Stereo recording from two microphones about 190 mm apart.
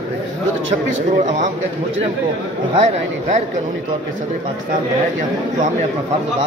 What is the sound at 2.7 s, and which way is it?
Speech, 35° right (ahead or behind).